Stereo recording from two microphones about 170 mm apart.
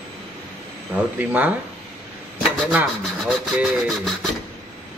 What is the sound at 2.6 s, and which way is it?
Speech, centre (ahead or behind).